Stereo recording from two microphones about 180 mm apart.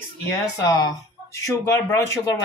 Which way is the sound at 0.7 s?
20° left (ahead or behind).